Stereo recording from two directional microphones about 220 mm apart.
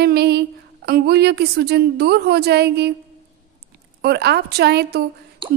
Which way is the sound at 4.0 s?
50° right (ahead or behind).